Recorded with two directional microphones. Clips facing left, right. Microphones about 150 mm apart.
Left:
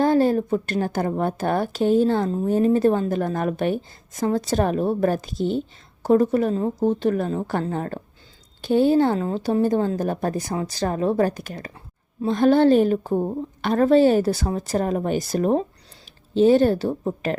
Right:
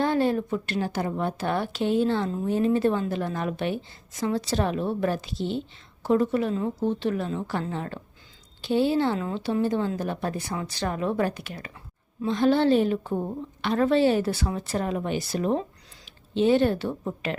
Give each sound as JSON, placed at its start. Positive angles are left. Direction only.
{"t": 0.0, "sound": "a woman's voice", "side_deg": 40}